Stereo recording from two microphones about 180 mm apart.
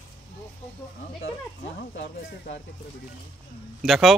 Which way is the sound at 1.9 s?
45° left (ahead or behind).